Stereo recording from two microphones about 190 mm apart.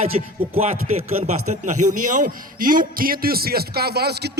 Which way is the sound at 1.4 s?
40° right (ahead or behind).